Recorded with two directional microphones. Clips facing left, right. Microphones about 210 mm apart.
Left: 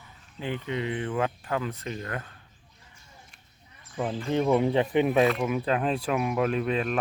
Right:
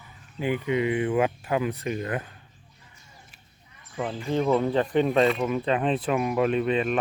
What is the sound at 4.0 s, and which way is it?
Speech, centre (ahead or behind).